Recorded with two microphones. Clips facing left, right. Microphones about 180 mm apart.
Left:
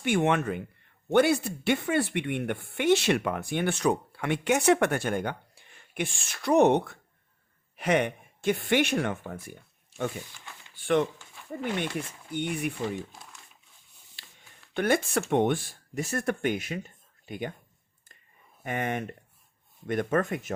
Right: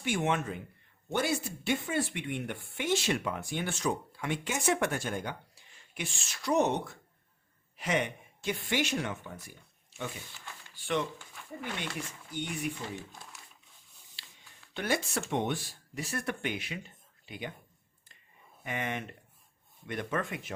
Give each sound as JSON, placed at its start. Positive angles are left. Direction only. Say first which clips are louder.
{"t": 0.0, "sound": "speech", "louder": "left 6 dB", "side_deg": 60}
{"t": 10.8, "sound": "a sound", "louder": "left 7 dB", "side_deg": 55}
{"t": 12.3, "sound": "speech", "louder": "left 5 dB", "side_deg": 60}
{"t": 14.2, "sound": "a sound", "louder": "left 2 dB", "side_deg": 55}
{"t": 14.7, "sound": "speech", "louder": "left 7 dB", "side_deg": 55}
{"t": 18.6, "sound": "speech", "louder": "left 5 dB", "side_deg": 50}